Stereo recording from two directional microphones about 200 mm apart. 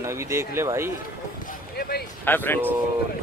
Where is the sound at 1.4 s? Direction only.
45° left (ahead or behind).